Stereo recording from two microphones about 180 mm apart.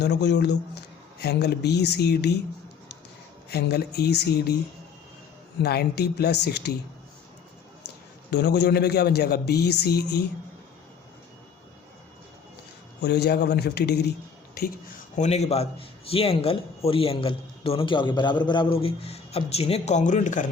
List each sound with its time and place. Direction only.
0.0 s a man's voice: 70° left (ahead or behind)
3.5 s a man's voice: 65° left (ahead or behind)
5.6 s a man's voice: 65° left (ahead or behind)
8.3 s a man's voice: 70° left (ahead or behind)
13.0 s a man's voice: 70° left (ahead or behind)
15.1 s a man's voice: 40° left (ahead or behind)